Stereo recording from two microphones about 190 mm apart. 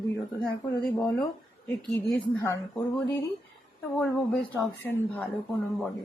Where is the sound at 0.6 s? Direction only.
15° left (ahead or behind).